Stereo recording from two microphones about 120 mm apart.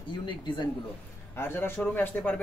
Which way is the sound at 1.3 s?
20° left (ahead or behind).